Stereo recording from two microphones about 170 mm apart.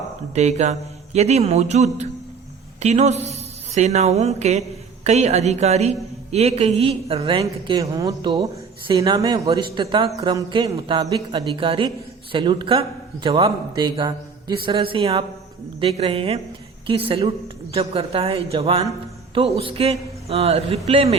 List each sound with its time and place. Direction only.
0.3 s speech: 40° right (ahead or behind)
7.4 s a man's voice: 20° right (ahead or behind)